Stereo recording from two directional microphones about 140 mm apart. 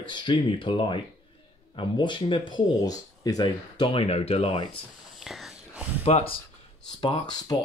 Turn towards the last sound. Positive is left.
turn(degrees=30)  # may be behind; listen again after turning